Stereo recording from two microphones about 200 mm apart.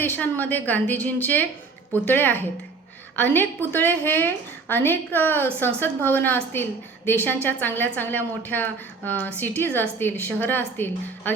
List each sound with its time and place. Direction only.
0.0 s a woman's voice: 10° left (ahead or behind)